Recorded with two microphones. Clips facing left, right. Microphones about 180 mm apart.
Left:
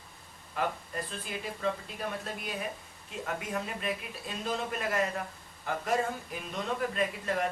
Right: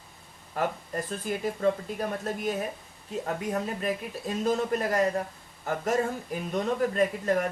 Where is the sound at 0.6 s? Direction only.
45° right (ahead or behind).